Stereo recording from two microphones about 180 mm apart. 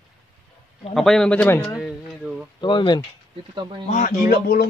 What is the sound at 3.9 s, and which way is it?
Speech, 50° left (ahead or behind).